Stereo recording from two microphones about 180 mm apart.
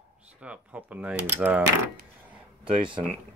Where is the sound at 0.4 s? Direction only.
5° right (ahead or behind).